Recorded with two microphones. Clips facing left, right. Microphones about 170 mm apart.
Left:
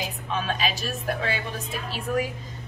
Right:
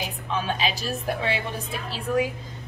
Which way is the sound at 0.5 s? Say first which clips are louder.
Right 1 dB; 25° right (ahead or behind).